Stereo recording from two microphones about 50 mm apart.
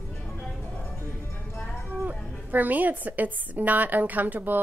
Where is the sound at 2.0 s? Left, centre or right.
Right.